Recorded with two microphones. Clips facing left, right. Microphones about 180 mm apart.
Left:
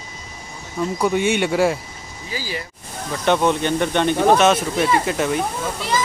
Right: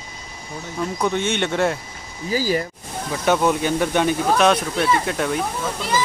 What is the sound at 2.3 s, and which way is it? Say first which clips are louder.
Speech: right 8 dB; 45° right (ahead or behind).